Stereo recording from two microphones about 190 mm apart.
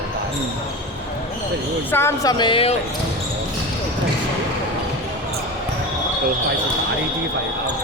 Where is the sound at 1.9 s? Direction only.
15° left (ahead or behind).